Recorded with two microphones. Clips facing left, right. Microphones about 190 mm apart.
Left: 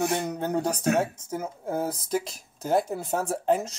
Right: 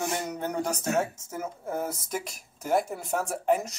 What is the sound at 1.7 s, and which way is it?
Speech, 30° left (ahead or behind).